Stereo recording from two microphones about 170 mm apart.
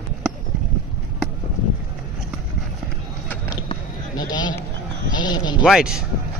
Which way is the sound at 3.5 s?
25° left (ahead or behind).